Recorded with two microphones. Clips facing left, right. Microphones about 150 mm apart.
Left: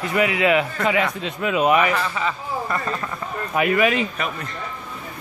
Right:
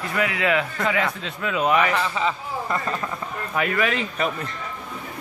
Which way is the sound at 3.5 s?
15° left (ahead or behind).